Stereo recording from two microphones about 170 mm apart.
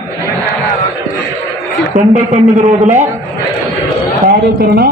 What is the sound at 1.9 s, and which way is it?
A man's voice, 45° right (ahead or behind).